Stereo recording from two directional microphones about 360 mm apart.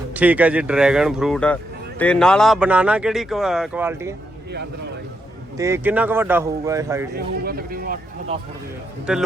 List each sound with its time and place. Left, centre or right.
0.1 s speech: centre
5.5 s speech: centre
7.4 s speech: right
9.1 s speech: centre